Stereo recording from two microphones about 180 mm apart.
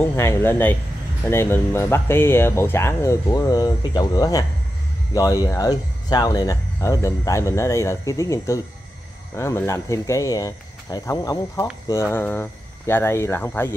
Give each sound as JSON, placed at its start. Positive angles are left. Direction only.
{"t": 0.0, "sound": "speech", "side_deg": 15}